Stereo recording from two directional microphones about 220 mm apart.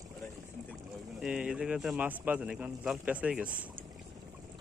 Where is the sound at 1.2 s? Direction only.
5° right (ahead or behind).